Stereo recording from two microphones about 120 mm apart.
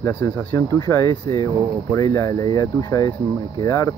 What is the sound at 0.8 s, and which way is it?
Speech, 30° left (ahead or behind).